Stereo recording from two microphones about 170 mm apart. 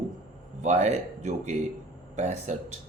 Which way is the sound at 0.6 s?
45° right (ahead or behind).